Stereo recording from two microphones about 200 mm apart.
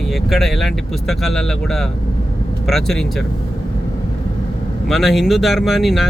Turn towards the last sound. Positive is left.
turn(degrees=0)  # may be behind; listen again after turning